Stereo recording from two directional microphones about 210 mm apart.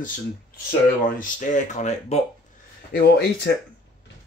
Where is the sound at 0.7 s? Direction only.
40° left (ahead or behind).